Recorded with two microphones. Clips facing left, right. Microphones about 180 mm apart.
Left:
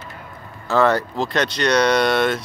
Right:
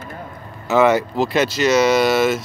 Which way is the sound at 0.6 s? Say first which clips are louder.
Right 3 dB; 20° right (ahead or behind).